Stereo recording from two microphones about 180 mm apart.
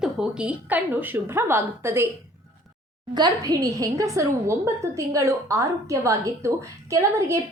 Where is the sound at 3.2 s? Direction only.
20° right (ahead or behind).